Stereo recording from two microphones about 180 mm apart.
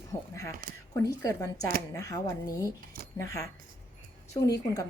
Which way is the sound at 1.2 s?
20° left (ahead or behind).